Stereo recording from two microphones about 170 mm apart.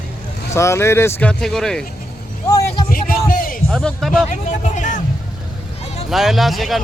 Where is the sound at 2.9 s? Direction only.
55° left (ahead or behind).